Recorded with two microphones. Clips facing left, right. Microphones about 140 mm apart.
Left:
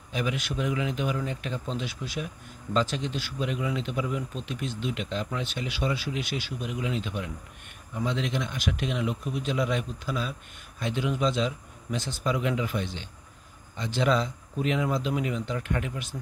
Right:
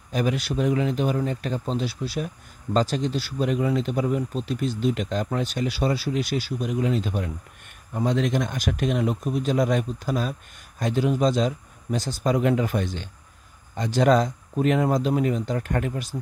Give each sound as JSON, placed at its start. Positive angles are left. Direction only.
{"t": 0.1, "sound": "speech", "side_deg": -40}